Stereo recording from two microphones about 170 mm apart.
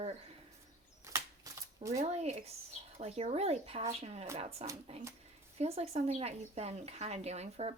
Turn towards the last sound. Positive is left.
turn(degrees=-40)  # may be behind; listen again after turning